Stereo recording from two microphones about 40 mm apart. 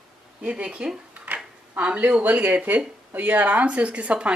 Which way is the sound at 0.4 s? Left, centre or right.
Right.